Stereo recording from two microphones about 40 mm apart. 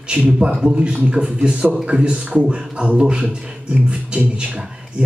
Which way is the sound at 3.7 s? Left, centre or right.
Right.